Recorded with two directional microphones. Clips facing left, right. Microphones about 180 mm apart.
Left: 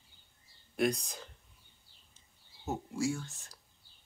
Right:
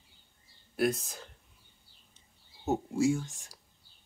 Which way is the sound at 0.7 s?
Centre (ahead or behind).